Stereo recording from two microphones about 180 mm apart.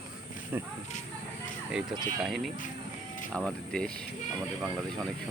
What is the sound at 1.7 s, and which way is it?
Speech, centre (ahead or behind).